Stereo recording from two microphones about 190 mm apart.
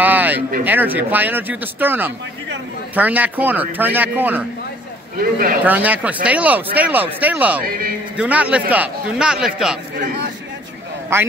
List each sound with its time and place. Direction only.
0.0 s a sound: 10° right (ahead or behind)
0.7 s speech: 10° right (ahead or behind)
5.2 s speech: 50° right (ahead or behind)
5.6 s speech: 10° right (ahead or behind)
7.6 s speech: 50° right (ahead or behind)
8.2 s a man's voice: 5° right (ahead or behind)
9.9 s a man's voice: 55° right (ahead or behind)